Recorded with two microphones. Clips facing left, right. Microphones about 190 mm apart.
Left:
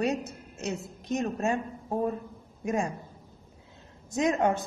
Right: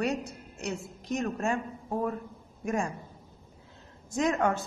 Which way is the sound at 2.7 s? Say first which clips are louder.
Left 1 dB; 20° left (ahead or behind).